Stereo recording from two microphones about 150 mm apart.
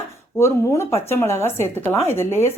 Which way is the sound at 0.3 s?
20° left (ahead or behind).